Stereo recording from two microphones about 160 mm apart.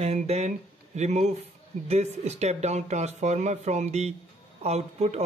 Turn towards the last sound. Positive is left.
turn(degrees=-40)  # may be behind; listen again after turning